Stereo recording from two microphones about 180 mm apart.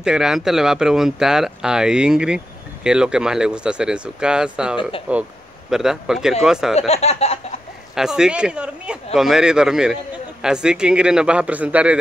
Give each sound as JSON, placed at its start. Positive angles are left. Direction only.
{"t": 0.0, "sound": "speech", "side_deg": -5}
{"t": 6.9, "sound": "a sound", "side_deg": 35}
{"t": 7.9, "sound": "speech", "side_deg": -5}